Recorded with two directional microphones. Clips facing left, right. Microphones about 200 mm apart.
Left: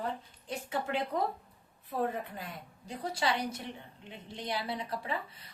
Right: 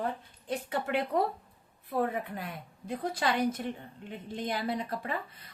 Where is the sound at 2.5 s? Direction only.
55° right (ahead or behind).